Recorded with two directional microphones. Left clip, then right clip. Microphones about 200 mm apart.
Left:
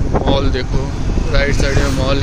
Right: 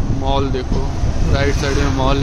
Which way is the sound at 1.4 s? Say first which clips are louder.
Left 2 dB; 25° right (ahead or behind).